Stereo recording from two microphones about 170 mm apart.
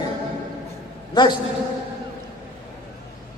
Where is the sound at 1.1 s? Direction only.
25° left (ahead or behind).